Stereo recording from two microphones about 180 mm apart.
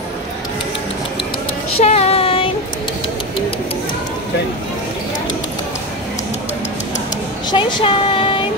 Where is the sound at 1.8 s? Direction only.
35° left (ahead or behind).